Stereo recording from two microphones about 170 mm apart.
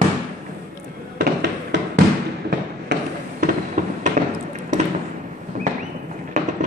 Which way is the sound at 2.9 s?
50° right (ahead or behind).